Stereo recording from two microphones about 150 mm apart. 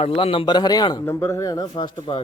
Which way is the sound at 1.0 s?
15° left (ahead or behind).